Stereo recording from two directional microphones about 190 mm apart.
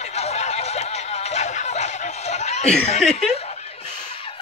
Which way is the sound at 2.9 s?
35° left (ahead or behind).